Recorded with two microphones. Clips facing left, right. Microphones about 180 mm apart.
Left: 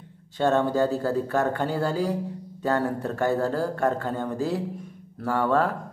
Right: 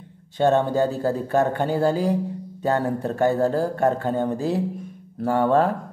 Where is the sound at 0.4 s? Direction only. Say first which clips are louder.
Right 3 dB; 20° right (ahead or behind).